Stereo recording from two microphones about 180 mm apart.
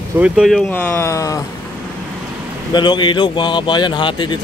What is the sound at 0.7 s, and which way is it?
Speech, 10° left (ahead or behind).